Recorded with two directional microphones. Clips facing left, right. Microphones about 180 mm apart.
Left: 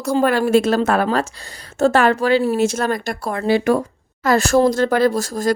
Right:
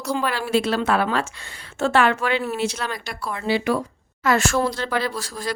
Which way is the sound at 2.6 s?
45° left (ahead or behind).